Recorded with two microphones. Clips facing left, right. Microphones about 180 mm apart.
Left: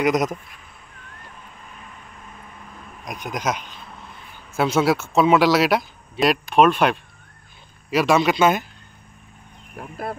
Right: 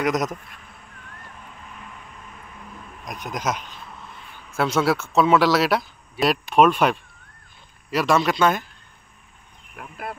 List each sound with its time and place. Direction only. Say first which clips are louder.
0.0 s speech: left 3 dB; centre (ahead or behind)
3.1 s speech: left 1 dB; centre (ahead or behind)
9.8 s speech: left 4 dB; 35° left (ahead or behind)